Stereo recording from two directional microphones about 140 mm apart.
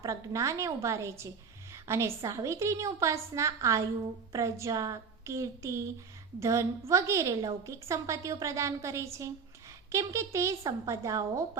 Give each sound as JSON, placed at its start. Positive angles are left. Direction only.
{"t": 0.0, "sound": "a woman's voice", "side_deg": -20}